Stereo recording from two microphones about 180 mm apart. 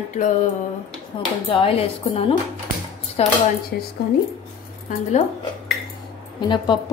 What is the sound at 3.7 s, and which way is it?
Speech, 60° left (ahead or behind).